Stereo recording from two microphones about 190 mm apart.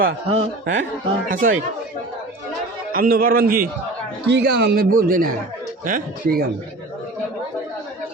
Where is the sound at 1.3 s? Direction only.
45° right (ahead or behind).